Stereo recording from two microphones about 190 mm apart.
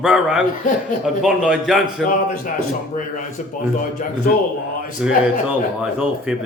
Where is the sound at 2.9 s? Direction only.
45° left (ahead or behind).